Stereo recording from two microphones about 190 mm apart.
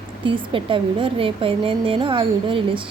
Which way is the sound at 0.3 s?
25° right (ahead or behind).